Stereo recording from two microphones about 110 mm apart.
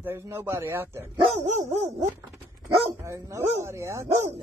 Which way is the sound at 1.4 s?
90° right.